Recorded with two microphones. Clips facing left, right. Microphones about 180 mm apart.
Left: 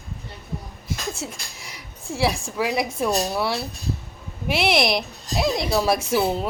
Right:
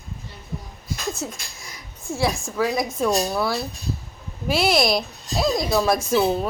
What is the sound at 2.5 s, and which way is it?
Speech, 5° left (ahead or behind).